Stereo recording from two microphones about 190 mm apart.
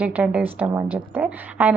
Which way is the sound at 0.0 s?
10° right (ahead or behind).